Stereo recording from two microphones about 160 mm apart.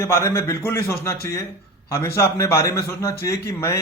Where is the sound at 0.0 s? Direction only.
15° left (ahead or behind).